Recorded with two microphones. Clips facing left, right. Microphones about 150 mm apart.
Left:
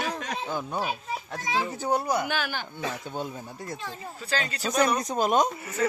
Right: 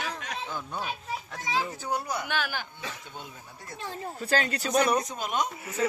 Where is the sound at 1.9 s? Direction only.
35° left (ahead or behind).